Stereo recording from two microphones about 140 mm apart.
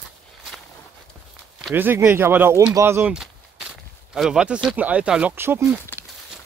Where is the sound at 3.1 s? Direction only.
5° right (ahead or behind).